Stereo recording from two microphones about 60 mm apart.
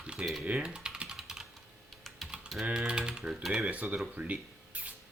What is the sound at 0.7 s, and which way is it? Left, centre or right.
Typing, centre.